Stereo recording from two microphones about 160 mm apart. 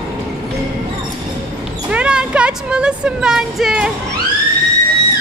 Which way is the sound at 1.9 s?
5° right (ahead or behind).